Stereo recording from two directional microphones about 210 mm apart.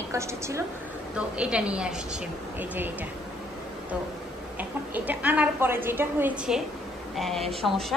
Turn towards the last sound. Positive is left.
turn(degrees=0)  # may be behind; listen again after turning